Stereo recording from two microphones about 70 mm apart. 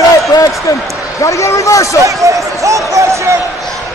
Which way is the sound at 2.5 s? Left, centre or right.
Right.